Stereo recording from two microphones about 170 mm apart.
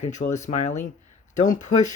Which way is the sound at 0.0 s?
45° left (ahead or behind).